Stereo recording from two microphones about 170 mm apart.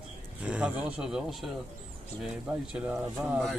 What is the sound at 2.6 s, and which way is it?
Speech, 5° right (ahead or behind).